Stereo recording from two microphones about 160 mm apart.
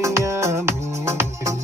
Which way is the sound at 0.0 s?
20° right (ahead or behind).